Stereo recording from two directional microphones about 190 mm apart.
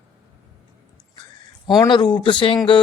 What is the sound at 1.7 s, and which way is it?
Speech, 20° left (ahead or behind).